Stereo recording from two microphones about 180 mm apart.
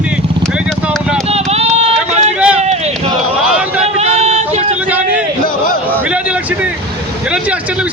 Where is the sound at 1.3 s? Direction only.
35° right (ahead or behind).